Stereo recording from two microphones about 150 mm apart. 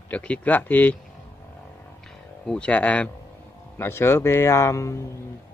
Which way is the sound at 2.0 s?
5° left (ahead or behind).